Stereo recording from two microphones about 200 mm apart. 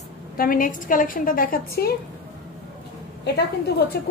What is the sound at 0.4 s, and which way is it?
A woman's voice, 45° left (ahead or behind).